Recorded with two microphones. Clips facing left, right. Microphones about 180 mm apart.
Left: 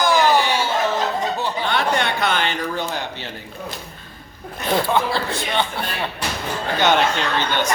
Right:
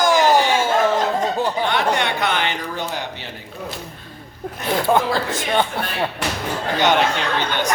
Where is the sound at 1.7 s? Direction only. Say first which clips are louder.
Right 1 dB; 15° right (ahead or behind).